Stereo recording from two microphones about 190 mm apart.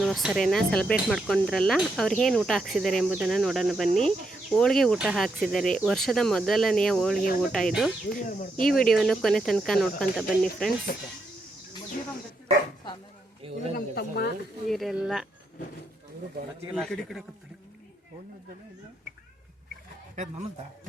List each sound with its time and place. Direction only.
0.0 s speech: centre (ahead or behind)
8.4 s speech: 45° left (ahead or behind)
8.8 s speech: centre (ahead or behind)
10.9 s speech: 55° left (ahead or behind)
13.4 s a sound: 30° right (ahead or behind)
13.7 s speech: 60° left (ahead or behind)
14.7 s speech: centre (ahead or behind)
16.7 s speech: centre (ahead or behind)
20.1 s a man's voice: 40° right (ahead or behind)